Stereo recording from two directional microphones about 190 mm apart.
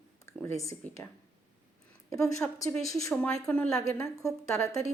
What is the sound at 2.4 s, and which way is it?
A woman's voice, 10° left (ahead or behind).